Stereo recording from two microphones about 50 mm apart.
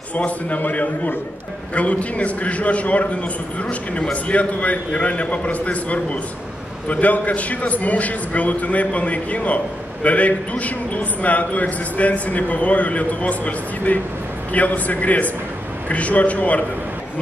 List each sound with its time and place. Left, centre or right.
0.1 s a man's voice: left